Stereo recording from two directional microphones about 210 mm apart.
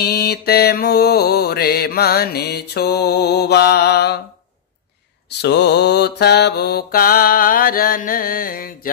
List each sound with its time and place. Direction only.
0.0 s mantra: 50° left (ahead or behind)
5.4 s mantra: 55° left (ahead or behind)